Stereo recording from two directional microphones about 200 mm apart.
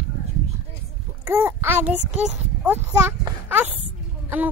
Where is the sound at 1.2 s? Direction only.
10° right (ahead or behind).